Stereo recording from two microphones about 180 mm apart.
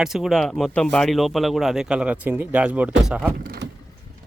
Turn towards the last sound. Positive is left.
turn(degrees=-60)  # may be behind; listen again after turning